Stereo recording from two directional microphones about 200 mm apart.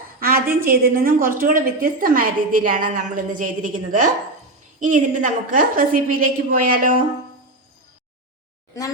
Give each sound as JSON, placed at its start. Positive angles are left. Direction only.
{"t": 0.2, "sound": "a woman's voice", "side_deg": -50}